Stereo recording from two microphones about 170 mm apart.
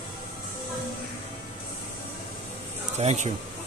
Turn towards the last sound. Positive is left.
turn(degrees=-40)  # may be behind; listen again after turning